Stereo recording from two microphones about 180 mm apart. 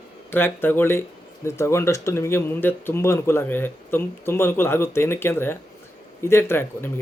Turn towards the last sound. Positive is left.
turn(degrees=10)  # may be behind; listen again after turning